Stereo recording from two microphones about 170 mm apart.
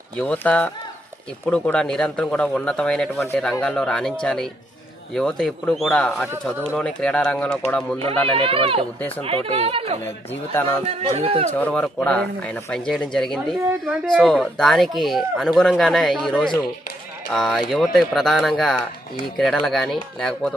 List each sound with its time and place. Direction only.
0.2 s speech: 10° left (ahead or behind)
8.3 s speech: 30° right (ahead or behind)
11.5 s speech: 10° left (ahead or behind)